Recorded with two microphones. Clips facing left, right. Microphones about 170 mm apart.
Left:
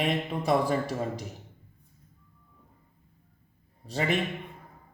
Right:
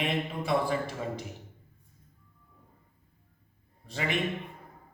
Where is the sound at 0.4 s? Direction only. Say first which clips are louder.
Left 4 dB; 40° left (ahead or behind).